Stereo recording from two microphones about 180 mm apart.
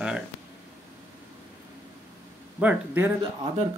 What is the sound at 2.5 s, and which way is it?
Speech, 10° right (ahead or behind).